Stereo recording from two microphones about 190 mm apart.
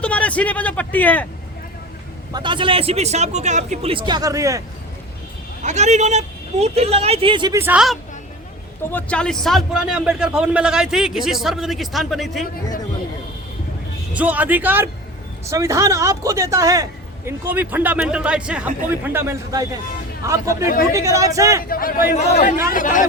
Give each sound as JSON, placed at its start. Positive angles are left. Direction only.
{"t": 0.0, "sound": "a man's voice", "side_deg": 5}
{"t": 2.3, "sound": "speech", "side_deg": -25}
{"t": 5.6, "sound": "speech", "side_deg": -35}
{"t": 7.6, "sound": "a man's voice", "side_deg": -5}
{"t": 8.8, "sound": "a man's voice", "side_deg": 10}
{"t": 14.1, "sound": "a man's voice", "side_deg": -10}
{"t": 20.7, "sound": "a man's voice", "side_deg": 45}
{"t": 20.9, "sound": "a man's voice", "side_deg": -15}
{"t": 21.6, "sound": "a man's voice", "side_deg": 50}